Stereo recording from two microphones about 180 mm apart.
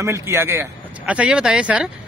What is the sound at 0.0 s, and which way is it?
Speech, 15° right (ahead or behind).